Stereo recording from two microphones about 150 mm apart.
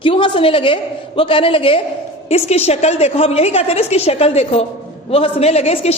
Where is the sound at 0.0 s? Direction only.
35° left (ahead or behind).